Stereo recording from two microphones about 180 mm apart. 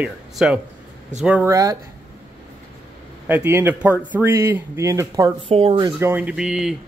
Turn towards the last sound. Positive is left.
turn(degrees=-5)  # may be behind; listen again after turning